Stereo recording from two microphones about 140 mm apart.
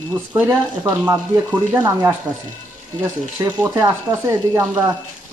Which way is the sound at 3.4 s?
25° right (ahead or behind).